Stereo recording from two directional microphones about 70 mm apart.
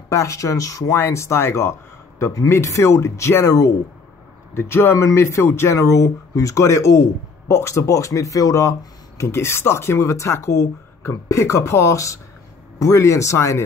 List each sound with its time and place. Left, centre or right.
0.1 s speech: left
4.6 s speech: left
9.2 s speech: left